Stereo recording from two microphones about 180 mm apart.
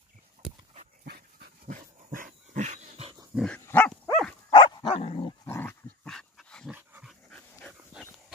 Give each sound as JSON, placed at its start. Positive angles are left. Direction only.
{"t": 1.0, "sound": "dog", "side_deg": -60}
{"t": 3.3, "sound": "dog", "side_deg": 5}
{"t": 4.5, "sound": "dog", "side_deg": 25}
{"t": 5.4, "sound": "dog", "side_deg": 15}